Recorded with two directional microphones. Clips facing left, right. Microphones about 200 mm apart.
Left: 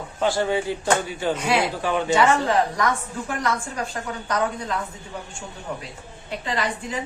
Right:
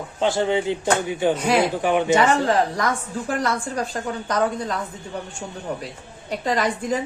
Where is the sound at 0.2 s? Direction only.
20° right (ahead or behind).